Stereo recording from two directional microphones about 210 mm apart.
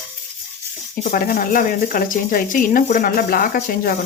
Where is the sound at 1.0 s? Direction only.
40° left (ahead or behind).